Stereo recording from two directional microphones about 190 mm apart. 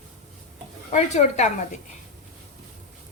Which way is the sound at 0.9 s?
40° left (ahead or behind).